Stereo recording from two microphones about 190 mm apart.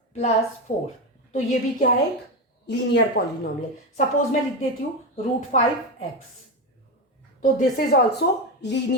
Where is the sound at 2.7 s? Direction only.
65° left (ahead or behind).